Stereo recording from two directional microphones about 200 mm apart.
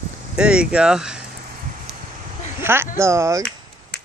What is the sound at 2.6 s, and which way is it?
Speech, 10° right (ahead or behind).